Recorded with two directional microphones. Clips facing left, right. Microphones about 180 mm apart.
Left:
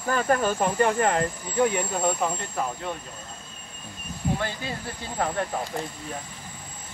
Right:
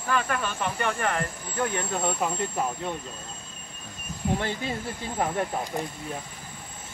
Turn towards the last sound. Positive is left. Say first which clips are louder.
# even
turn(degrees=-15)  # may be behind; listen again after turning